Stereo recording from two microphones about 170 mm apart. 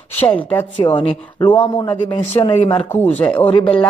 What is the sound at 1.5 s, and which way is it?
A man's voice, 30° left (ahead or behind).